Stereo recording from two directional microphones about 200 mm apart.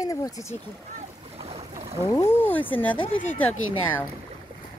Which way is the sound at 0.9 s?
30° right (ahead or behind).